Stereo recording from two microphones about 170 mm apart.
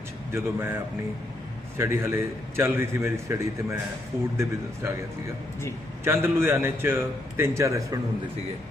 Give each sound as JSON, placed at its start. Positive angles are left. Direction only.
{"t": 0.3, "sound": "a man's voice", "side_deg": -15}
{"t": 1.8, "sound": "a man's voice", "side_deg": -15}
{"t": 6.1, "sound": "a man's voice", "side_deg": -15}